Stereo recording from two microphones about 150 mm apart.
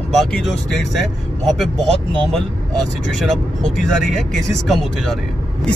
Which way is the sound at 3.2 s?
5° left (ahead or behind).